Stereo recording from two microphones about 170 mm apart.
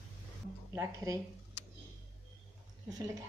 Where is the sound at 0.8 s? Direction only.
20° right (ahead or behind).